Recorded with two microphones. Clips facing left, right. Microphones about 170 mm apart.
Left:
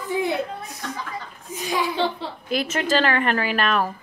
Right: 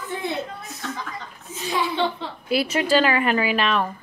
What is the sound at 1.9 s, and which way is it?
Speech, centre (ahead or behind).